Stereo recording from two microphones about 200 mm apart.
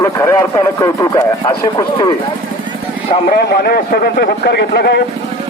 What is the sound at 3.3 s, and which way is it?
A man's voice, 50° left (ahead or behind).